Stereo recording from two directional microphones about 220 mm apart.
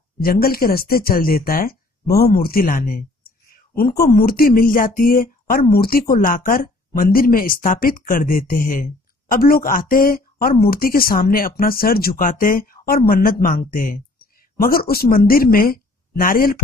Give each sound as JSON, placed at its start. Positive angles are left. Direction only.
{"t": 0.2, "sound": "speech", "side_deg": 45}